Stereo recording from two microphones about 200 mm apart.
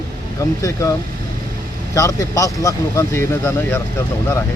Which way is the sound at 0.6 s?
15° left (ahead or behind).